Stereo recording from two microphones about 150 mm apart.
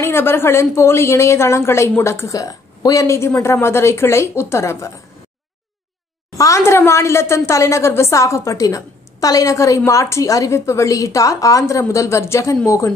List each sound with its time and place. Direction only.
0.0 s a woman's voice: 15° left (ahead or behind)
6.3 s a woman's voice: 20° left (ahead or behind)